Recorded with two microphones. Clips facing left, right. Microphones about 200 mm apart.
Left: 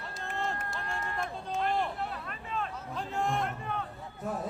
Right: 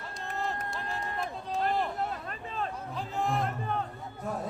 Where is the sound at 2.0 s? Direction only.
40° right (ahead or behind).